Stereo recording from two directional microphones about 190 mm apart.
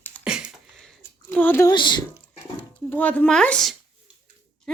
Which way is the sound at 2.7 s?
10° left (ahead or behind).